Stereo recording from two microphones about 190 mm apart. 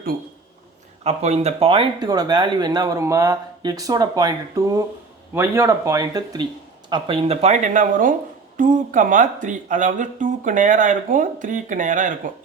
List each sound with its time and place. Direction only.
1.0 s speech: 35° right (ahead or behind)
6.9 s speech: 30° right (ahead or behind)